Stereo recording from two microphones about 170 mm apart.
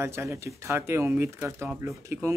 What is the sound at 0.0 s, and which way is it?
Speech, 15° right (ahead or behind).